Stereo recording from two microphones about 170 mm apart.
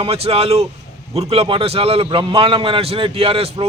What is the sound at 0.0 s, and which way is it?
A man's voice, 35° right (ahead or behind).